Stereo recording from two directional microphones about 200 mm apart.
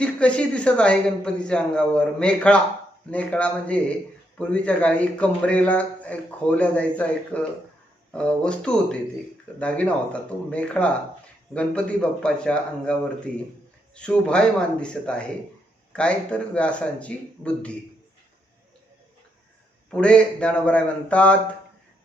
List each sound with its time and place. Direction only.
0.0 s a man's voice: 5° left (ahead or behind)
19.9 s a man's voice: 5° left (ahead or behind)